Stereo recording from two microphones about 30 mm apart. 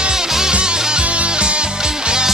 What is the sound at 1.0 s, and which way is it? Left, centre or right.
Music, right.